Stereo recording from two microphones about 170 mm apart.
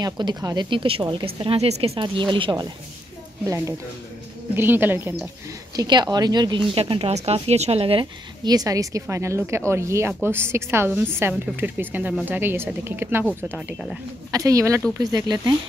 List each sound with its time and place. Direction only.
0.0 s a woman's voice: 25° right (ahead or behind)
5.8 s a woman's voice: 25° right (ahead or behind)
13.6 s speech: centre (ahead or behind)
14.3 s speech: 20° right (ahead or behind)